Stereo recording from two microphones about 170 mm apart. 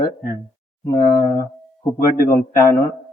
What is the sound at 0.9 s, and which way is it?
Speech, 20° left (ahead or behind).